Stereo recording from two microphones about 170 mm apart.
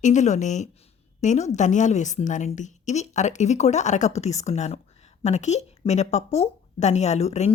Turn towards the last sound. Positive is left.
turn(degrees=40)  # may be behind; listen again after turning